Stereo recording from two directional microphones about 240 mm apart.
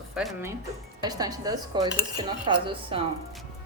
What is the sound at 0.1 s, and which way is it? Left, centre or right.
Speech, centre.